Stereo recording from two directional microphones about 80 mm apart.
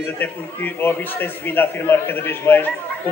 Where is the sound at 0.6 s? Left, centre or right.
Left.